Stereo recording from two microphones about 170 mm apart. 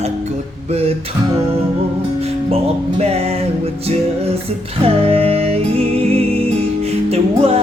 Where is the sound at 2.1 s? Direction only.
35° right (ahead or behind).